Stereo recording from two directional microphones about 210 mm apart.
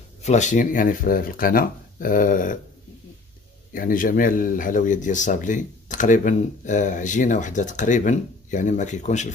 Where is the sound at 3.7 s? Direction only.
40° left (ahead or behind).